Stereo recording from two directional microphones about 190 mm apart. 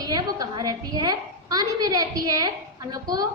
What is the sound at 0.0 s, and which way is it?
A woman's voice, 20° right (ahead or behind).